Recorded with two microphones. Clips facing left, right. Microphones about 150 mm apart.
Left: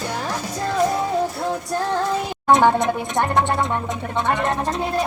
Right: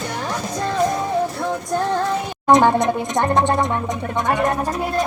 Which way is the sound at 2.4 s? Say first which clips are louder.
Right 2 dB; 15° right (ahead or behind).